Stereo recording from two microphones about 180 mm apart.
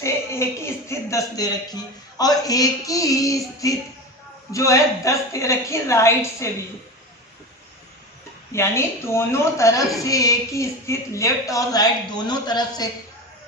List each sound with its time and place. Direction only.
0.0 s a woman's voice: 15° left (ahead or behind)
8.5 s a woman's voice: 15° left (ahead or behind)